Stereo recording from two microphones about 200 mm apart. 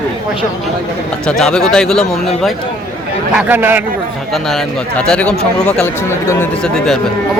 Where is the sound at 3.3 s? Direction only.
10° right (ahead or behind).